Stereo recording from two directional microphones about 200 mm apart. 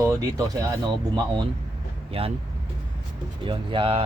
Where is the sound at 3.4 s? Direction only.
25° right (ahead or behind).